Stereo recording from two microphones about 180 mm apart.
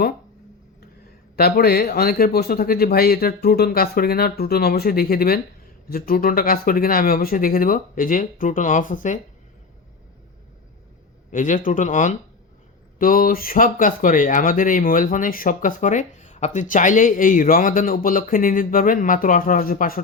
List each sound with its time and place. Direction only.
1.4 s a man's voice: 60° left (ahead or behind)
11.3 s speech: 45° left (ahead or behind)